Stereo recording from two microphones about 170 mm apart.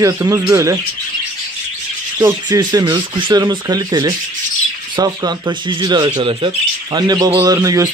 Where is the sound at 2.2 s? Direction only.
25° right (ahead or behind).